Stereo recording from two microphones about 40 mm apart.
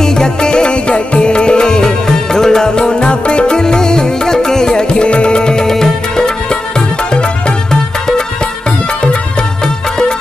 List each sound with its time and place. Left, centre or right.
0.0 s music: centre